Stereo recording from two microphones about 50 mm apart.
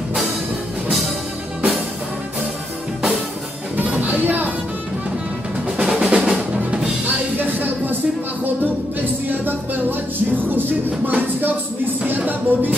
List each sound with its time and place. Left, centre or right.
4.0 s music: right
5.9 s music: centre
7.3 s a sound: right
11.1 s music: right